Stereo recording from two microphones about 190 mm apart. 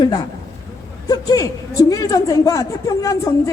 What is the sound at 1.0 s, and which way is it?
A woman's voice, 20° left (ahead or behind).